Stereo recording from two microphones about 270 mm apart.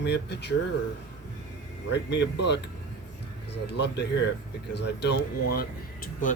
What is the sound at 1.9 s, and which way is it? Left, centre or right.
Speech, left.